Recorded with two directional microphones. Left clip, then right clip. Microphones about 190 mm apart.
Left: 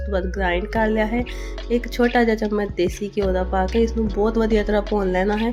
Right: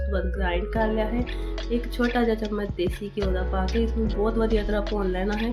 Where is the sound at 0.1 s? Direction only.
30° left (ahead or behind).